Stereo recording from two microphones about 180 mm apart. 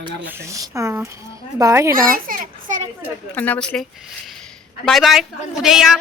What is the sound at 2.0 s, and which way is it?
Children playing, 50° right (ahead or behind).